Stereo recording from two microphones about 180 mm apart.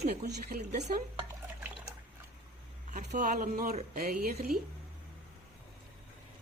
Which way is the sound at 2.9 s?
45° right (ahead or behind).